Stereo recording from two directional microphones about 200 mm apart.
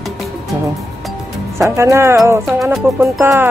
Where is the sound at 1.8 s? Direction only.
15° right (ahead or behind).